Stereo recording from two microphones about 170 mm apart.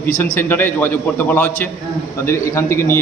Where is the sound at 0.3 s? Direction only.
10° left (ahead or behind).